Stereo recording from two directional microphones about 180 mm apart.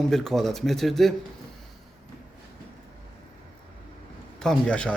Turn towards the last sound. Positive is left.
turn(degrees=5)  # may be behind; listen again after turning